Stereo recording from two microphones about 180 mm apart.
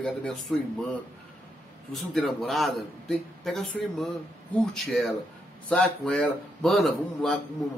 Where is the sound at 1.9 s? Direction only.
Centre (ahead or behind).